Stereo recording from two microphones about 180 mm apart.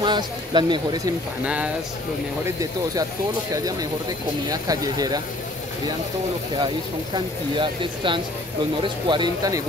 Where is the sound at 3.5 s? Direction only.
20° right (ahead or behind).